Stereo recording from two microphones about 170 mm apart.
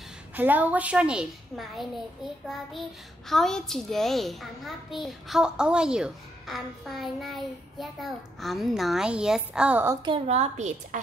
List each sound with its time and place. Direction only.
0.4 s a woman's voice: 10° right (ahead or behind)
3.3 s a child's voice: centre (ahead or behind)
10.0 s a woman's voice: 35° right (ahead or behind)